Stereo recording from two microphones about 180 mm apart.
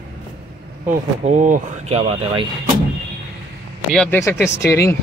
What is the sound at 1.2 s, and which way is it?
Speech, 45° right (ahead or behind).